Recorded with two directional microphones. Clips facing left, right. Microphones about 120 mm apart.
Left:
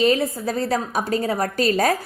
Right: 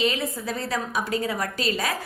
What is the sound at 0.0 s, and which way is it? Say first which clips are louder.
A woman's voice: left 7 dB; 40° left (ahead or behind).